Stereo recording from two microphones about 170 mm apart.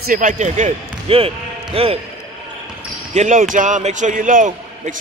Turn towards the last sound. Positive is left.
turn(degrees=-50)  # may be behind; listen again after turning